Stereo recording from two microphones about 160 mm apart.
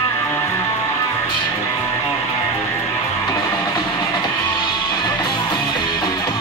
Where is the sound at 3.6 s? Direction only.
25° left (ahead or behind).